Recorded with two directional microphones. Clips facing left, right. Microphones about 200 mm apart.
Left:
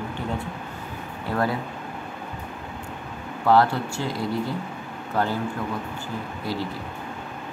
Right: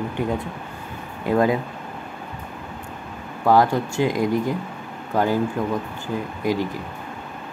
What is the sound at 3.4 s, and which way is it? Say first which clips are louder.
Speech: right 2 dB; 15° right (ahead or behind).